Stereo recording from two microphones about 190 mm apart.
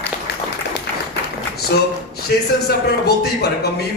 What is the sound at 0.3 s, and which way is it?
Applause, 60° left (ahead or behind).